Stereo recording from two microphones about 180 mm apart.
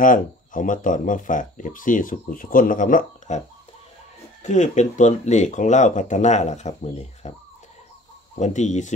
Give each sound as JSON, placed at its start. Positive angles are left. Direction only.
{"t": 0.0, "sound": "speech", "side_deg": 50}
{"t": 8.4, "sound": "speech", "side_deg": 40}